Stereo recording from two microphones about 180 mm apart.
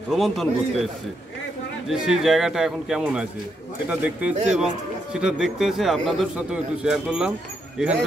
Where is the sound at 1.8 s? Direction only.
Centre (ahead or behind).